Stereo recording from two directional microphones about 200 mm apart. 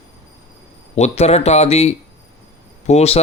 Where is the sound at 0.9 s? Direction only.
35° left (ahead or behind).